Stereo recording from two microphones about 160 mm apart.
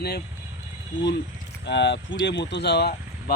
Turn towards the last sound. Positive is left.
turn(degrees=90)